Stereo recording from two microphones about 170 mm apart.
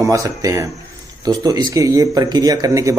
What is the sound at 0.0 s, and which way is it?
Speech, 20° right (ahead or behind).